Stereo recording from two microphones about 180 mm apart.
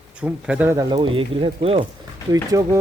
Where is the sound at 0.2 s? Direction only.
5° right (ahead or behind).